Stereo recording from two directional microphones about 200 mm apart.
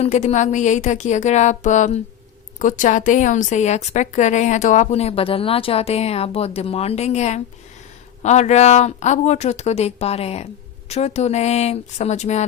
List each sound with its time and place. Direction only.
0.0 s a woman's voice: 35° left (ahead or behind)